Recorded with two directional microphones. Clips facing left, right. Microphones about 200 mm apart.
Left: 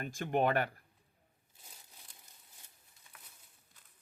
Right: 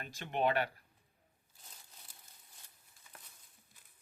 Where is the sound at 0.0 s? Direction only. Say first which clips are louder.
Left 3 dB; 45° left (ahead or behind).